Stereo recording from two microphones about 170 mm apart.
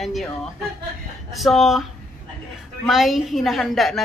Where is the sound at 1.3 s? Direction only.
Centre (ahead or behind).